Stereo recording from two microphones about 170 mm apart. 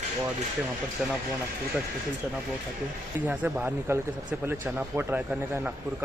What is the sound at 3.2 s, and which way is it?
Speech, 10° right (ahead or behind).